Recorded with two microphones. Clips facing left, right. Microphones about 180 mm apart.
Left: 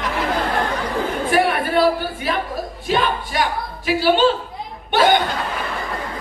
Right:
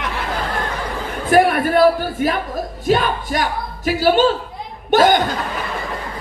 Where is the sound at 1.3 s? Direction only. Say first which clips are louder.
Right 6 dB; 45° right (ahead or behind).